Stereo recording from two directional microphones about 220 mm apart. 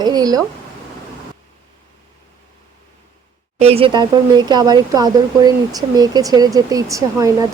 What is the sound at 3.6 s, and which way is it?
Speech, 25° right (ahead or behind).